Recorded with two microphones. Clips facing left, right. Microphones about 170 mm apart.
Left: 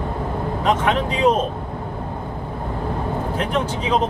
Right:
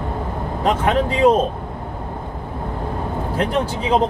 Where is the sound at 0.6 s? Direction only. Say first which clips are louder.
Right 2 dB; 40° right (ahead or behind).